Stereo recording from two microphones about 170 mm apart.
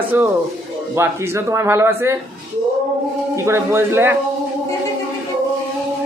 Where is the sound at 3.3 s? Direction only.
15° right (ahead or behind).